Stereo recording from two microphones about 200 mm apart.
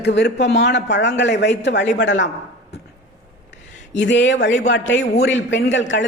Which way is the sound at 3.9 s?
65° left (ahead or behind).